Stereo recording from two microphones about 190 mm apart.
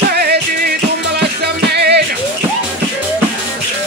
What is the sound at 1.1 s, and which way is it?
Music, 60° right (ahead or behind).